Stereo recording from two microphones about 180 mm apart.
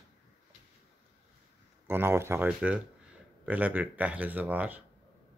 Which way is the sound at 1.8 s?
10° right (ahead or behind).